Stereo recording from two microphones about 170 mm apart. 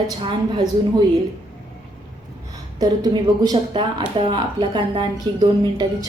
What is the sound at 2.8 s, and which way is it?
A woman's voice, 25° right (ahead or behind).